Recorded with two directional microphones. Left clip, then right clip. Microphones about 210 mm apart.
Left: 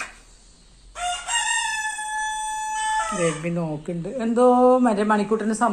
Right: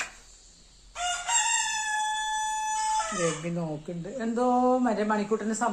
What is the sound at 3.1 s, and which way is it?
Speech, 5° left (ahead or behind).